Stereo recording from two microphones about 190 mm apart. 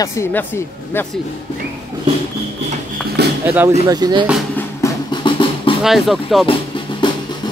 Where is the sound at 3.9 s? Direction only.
20° right (ahead or behind).